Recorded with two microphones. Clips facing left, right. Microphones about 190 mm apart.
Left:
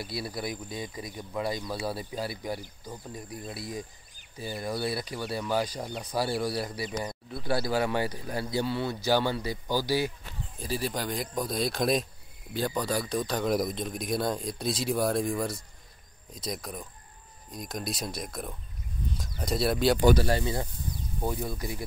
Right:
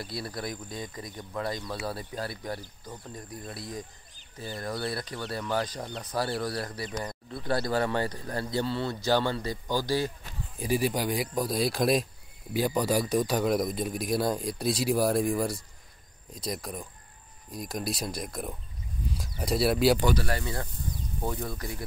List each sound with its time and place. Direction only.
0.0 s speech: 5° left (ahead or behind)
10.6 s speech: 10° right (ahead or behind)
20.2 s speech: 20° left (ahead or behind)